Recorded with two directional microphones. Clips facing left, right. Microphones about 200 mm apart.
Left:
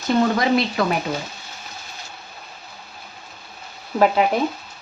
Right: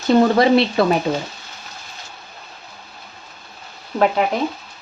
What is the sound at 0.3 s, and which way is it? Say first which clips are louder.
Speech: right 5 dB; 30° right (ahead or behind).